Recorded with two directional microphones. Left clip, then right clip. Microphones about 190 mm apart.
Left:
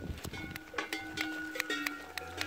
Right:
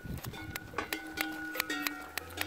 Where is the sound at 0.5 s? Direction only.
35° right (ahead or behind).